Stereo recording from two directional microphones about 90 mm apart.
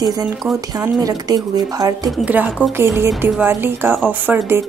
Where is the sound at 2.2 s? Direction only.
15° right (ahead or behind).